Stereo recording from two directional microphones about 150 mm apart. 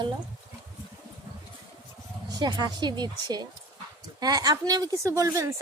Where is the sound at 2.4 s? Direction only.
30° right (ahead or behind).